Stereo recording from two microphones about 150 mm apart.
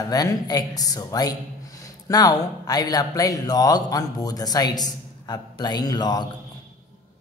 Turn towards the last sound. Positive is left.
turn(degrees=25)  # may be behind; listen again after turning